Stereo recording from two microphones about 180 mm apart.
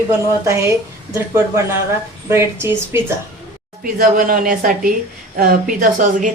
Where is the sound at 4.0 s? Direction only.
50° right (ahead or behind).